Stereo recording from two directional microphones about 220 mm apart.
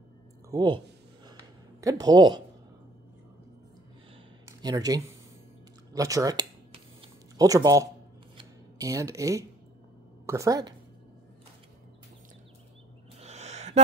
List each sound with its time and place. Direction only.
0.5 s speech: 20° right (ahead or behind)
1.8 s speech: 15° right (ahead or behind)
4.5 s speech: 15° right (ahead or behind)
5.9 s a sound: 15° right (ahead or behind)
10.2 s a woman's voice: 15° right (ahead or behind)
13.2 s a sound: 30° right (ahead or behind)